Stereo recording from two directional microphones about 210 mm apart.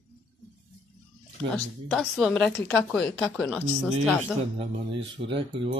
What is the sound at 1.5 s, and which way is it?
Speech, centre (ahead or behind).